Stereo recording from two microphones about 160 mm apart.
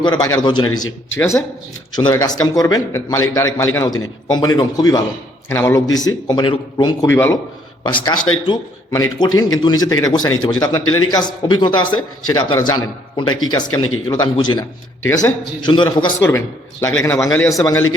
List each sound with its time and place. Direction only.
0.0 s a man's voice: 25° left (ahead or behind)
1.1 s a man's voice: 15° left (ahead or behind)
2.0 s a man's voice: 25° left (ahead or behind)
7.1 s a man's voice: 15° left (ahead or behind)
8.0 s a man's voice: 25° left (ahead or behind)
16.0 s a man's voice: 15° left (ahead or behind)